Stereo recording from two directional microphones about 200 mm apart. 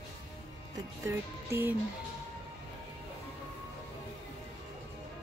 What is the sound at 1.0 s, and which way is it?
Music, 10° right (ahead or behind).